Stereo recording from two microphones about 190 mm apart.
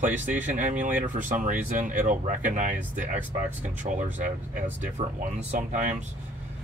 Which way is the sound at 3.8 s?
40° right (ahead or behind).